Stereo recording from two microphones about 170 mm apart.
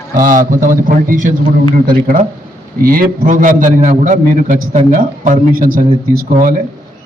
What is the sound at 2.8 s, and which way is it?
A man's voice, 60° right (ahead or behind).